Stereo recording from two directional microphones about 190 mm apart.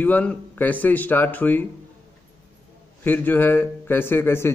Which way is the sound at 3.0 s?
10° left (ahead or behind).